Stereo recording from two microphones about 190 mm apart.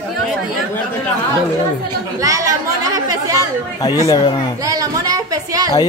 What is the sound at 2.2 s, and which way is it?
Chatter, 15° right (ahead or behind).